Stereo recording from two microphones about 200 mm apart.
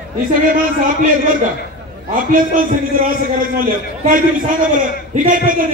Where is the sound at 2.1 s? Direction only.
45° right (ahead or behind).